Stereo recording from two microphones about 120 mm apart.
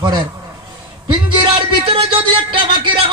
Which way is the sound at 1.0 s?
45° right (ahead or behind).